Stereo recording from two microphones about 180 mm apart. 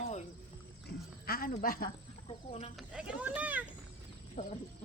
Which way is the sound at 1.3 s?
55° left (ahead or behind).